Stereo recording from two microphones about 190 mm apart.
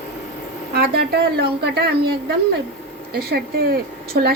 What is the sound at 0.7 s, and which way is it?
Speech, 55° right (ahead or behind).